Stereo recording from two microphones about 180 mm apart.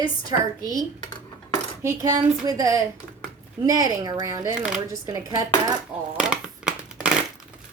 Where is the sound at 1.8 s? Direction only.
15° right (ahead or behind).